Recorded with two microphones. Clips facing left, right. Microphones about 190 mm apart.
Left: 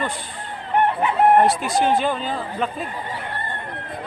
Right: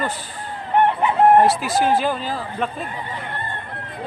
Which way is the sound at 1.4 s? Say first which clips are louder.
Right 1 dB; centre (ahead or behind).